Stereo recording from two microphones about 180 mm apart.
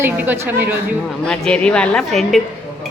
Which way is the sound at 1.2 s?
5° left (ahead or behind).